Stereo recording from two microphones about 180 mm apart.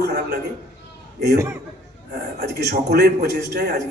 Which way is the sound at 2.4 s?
65° right (ahead or behind).